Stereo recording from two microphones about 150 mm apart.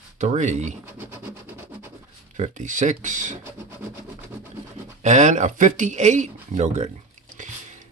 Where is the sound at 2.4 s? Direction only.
55° right (ahead or behind).